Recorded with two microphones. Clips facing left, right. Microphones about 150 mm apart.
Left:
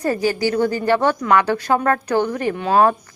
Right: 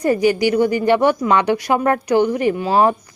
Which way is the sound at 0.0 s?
15° right (ahead or behind).